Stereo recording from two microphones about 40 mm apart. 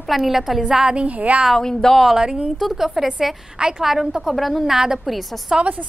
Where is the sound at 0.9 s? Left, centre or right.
Right.